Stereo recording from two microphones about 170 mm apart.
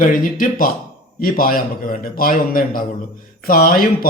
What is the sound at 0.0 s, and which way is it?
Speech, 55° left (ahead or behind).